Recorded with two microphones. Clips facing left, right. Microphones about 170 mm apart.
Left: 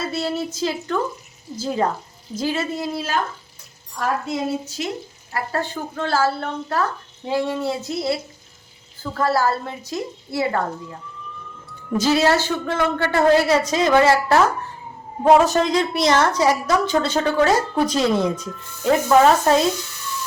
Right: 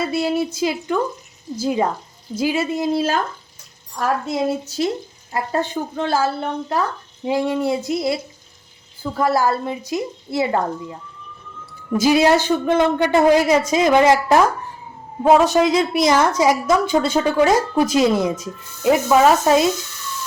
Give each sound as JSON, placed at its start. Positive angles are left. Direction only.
{"t": 0.1, "sound": "a woman's voice", "side_deg": -15}
{"t": 4.8, "sound": "speech", "side_deg": -35}
{"t": 5.3, "sound": "a woman's voice", "side_deg": -20}
{"t": 11.9, "sound": "a woman's voice", "side_deg": -15}
{"t": 15.2, "sound": "a man's voice", "side_deg": 0}